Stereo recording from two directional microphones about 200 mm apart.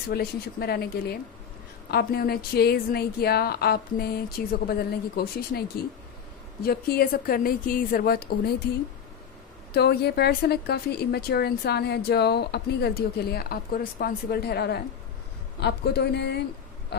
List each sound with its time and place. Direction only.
0.1 s a woman's voice: 50° left (ahead or behind)
9.7 s a woman's voice: 55° left (ahead or behind)
16.9 s a sound: 55° left (ahead or behind)